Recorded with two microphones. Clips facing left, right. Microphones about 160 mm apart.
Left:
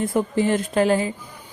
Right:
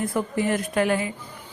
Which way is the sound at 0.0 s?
25° left (ahead or behind).